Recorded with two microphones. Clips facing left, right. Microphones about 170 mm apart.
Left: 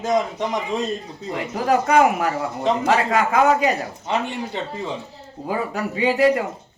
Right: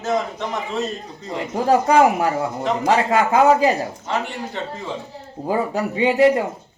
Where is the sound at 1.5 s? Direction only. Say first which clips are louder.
Right 2 dB; 30° right (ahead or behind).